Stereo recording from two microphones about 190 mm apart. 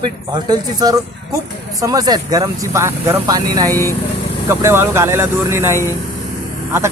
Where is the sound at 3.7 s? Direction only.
15° left (ahead or behind).